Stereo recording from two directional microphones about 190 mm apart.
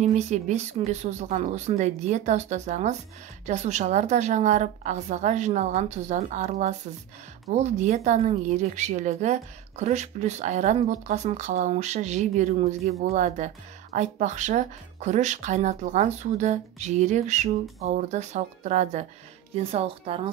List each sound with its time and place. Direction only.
0.0 s a woman's voice: 35° right (ahead or behind)